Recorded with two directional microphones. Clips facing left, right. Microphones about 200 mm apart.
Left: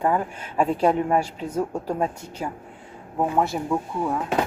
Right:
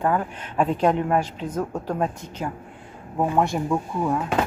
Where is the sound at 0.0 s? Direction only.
10° left (ahead or behind).